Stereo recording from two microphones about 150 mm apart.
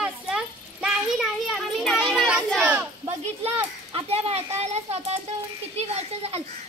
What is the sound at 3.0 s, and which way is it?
A woman's voice, 40° right (ahead or behind).